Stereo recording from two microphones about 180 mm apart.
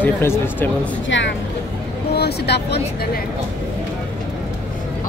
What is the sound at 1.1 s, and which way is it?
Speech, 90° left.